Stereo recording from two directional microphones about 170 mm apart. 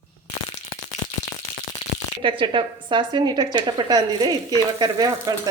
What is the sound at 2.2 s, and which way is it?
A woman's voice, 30° right (ahead or behind).